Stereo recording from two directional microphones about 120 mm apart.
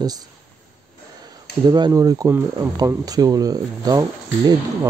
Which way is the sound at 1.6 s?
35° right (ahead or behind).